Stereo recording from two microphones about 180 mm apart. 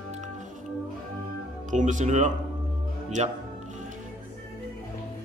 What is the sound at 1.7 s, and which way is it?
Chuckle, 45° right (ahead or behind).